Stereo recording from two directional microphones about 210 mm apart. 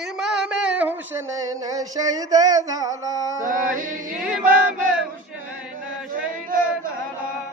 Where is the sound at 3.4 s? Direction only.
40° right (ahead or behind).